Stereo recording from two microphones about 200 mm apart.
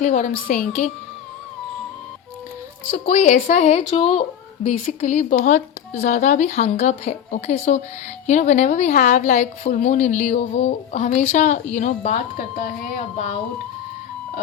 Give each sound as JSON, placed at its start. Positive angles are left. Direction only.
{"t": 0.0, "sound": "a woman's voice", "side_deg": 35}
{"t": 2.9, "sound": "a woman's voice", "side_deg": 35}